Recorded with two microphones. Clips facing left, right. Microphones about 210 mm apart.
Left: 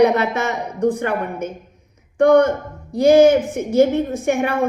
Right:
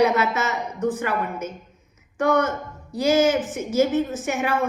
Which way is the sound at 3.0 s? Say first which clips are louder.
Left 8 dB; 55° left (ahead or behind).